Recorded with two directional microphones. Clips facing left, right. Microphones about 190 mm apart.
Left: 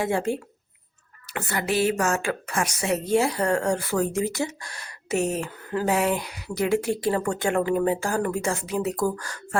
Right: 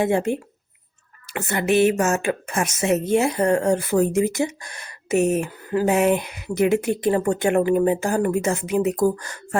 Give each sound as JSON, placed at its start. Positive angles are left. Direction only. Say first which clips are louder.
{"t": 0.0, "sound": "a woman's voice", "louder": "right 4 dB", "side_deg": -20}